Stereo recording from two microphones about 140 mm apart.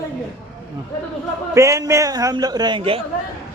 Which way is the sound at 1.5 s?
20° right (ahead or behind).